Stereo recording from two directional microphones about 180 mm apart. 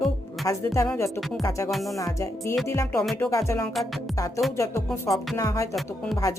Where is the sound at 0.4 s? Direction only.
15° left (ahead or behind).